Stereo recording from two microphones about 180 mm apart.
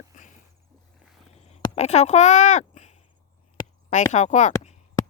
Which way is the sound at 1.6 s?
35° left (ahead or behind).